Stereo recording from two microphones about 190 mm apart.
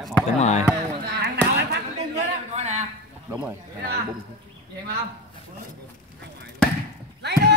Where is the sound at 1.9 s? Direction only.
35° right (ahead or behind).